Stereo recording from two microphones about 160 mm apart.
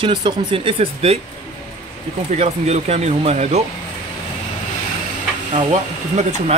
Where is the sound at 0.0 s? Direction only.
30° right (ahead or behind).